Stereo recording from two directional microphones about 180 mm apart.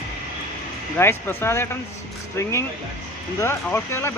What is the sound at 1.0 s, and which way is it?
Speech, 15° left (ahead or behind).